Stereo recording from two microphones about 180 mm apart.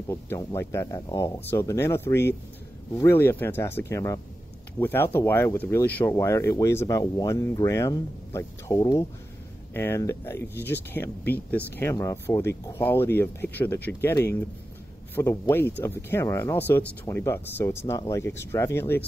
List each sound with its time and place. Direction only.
0.1 s speech: 15° left (ahead or behind)
10.5 s speech: 70° left (ahead or behind)
10.9 s speech: 10° left (ahead or behind)